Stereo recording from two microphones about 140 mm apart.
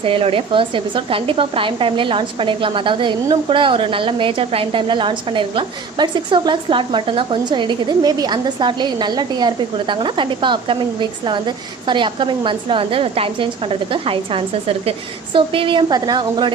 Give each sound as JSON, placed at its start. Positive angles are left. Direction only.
{"t": 0.0, "sound": "speech", "side_deg": -40}